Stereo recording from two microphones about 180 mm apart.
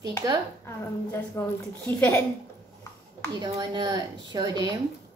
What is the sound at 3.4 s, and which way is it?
Speech, 25° right (ahead or behind).